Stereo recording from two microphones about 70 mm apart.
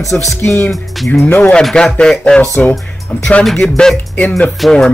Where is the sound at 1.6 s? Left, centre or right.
Centre.